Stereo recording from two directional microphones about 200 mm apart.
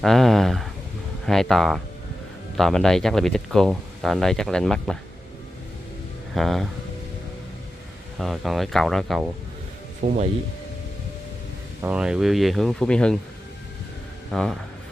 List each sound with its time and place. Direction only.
0.0 s speech: centre (ahead or behind)
6.3 s speech: centre (ahead or behind)
8.2 s speech: centre (ahead or behind)
10.0 s speech: 40° right (ahead or behind)
11.8 s speech: 5° right (ahead or behind)
14.3 s speech: centre (ahead or behind)